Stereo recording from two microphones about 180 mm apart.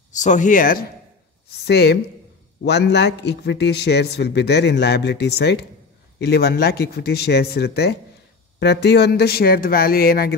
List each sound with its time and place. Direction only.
0.2 s speech: 45° left (ahead or behind)
1.7 s speech: 65° left (ahead or behind)